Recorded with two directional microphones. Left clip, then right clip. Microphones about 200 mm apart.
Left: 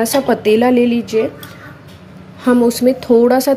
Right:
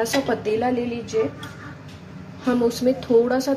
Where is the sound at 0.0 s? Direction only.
40° left (ahead or behind).